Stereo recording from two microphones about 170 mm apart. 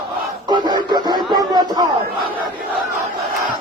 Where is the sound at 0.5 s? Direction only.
25° right (ahead or behind).